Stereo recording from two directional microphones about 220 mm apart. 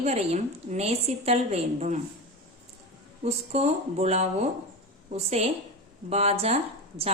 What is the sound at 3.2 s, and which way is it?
Speech, 30° right (ahead or behind).